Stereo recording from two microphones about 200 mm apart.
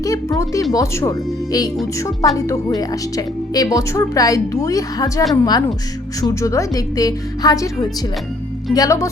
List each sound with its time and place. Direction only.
0.0 s a woman's voice: 15° left (ahead or behind)